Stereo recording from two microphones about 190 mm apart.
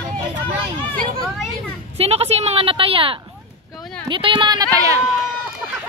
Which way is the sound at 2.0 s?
30° right (ahead or behind).